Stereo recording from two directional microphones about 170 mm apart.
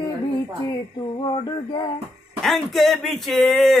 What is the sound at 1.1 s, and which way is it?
Music, 25° left (ahead or behind).